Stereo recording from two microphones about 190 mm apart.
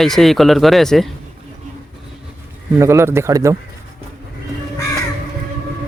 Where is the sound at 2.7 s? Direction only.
15° right (ahead or behind).